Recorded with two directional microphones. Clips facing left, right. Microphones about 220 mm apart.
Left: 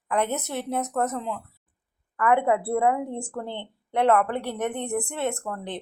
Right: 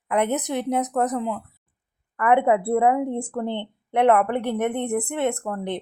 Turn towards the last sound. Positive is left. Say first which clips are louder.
# right 5 dB
turn(degrees=-20)  # may be behind; listen again after turning